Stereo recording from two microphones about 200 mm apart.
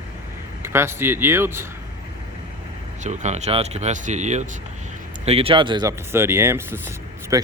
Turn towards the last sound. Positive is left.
turn(degrees=-15)  # may be behind; listen again after turning